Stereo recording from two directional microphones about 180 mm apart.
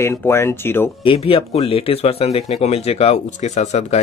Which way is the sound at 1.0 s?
30° left (ahead or behind).